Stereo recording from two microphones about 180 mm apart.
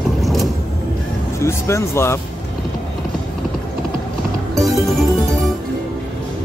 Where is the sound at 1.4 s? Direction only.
15° left (ahead or behind).